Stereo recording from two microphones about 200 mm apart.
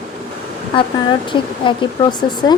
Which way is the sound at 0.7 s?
25° left (ahead or behind).